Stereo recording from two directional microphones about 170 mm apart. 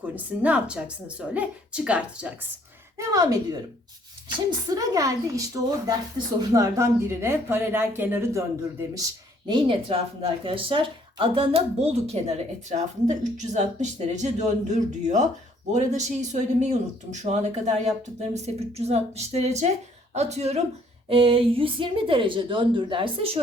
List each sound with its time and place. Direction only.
0.0 s speech: 10° right (ahead or behind)
3.0 s a woman's voice: 20° right (ahead or behind)
9.5 s a woman's voice: 30° right (ahead or behind)